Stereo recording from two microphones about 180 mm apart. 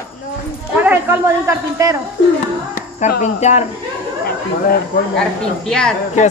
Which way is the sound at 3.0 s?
40° left (ahead or behind).